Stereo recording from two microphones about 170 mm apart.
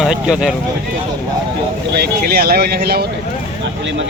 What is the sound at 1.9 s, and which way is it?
Speech, 70° right (ahead or behind).